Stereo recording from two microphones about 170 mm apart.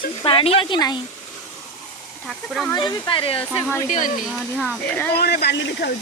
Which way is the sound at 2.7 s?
25° left (ahead or behind).